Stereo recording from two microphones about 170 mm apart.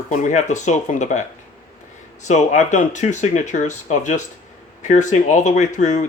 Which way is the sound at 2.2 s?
45° left (ahead or behind).